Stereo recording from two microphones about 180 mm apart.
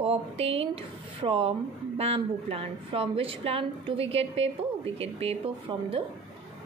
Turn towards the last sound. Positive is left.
turn(degrees=-30)  # may be behind; listen again after turning